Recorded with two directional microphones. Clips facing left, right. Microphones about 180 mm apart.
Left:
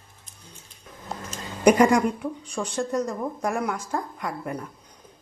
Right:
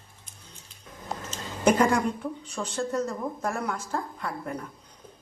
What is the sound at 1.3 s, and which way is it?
Speech, 15° left (ahead or behind).